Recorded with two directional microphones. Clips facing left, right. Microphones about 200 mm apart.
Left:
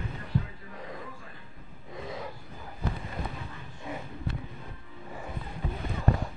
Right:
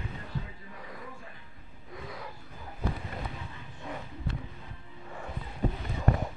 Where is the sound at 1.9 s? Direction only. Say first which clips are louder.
Left 4 dB; 25° left (ahead or behind).